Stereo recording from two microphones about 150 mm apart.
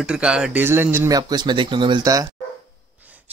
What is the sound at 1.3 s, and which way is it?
Speech, 30° right (ahead or behind).